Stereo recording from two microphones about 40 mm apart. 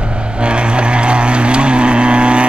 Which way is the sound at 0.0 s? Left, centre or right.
Right.